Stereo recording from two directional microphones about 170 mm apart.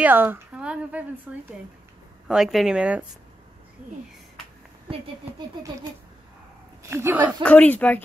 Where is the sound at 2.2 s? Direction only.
5° right (ahead or behind).